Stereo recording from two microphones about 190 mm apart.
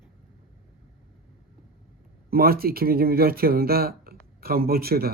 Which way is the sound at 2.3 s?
55° right (ahead or behind).